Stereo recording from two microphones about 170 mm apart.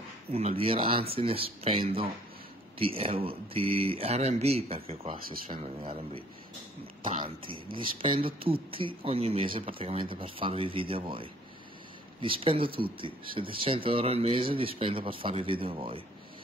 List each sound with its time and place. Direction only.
0.3 s speech: 40° right (ahead or behind)
5.1 s speech: 55° right (ahead or behind)
7.1 s speech: 35° right (ahead or behind)